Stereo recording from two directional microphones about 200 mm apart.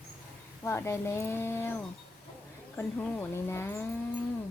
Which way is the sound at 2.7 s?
10° left (ahead or behind).